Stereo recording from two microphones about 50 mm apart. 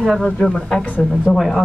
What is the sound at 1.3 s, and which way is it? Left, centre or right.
Speech, centre.